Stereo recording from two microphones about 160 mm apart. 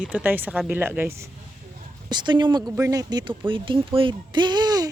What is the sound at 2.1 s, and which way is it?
Speech, 30° right (ahead or behind).